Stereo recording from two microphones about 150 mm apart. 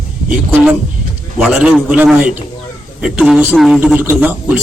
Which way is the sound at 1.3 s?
10° right (ahead or behind).